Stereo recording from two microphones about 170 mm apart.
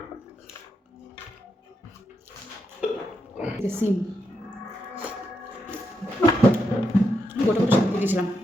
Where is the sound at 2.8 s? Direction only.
5° right (ahead or behind).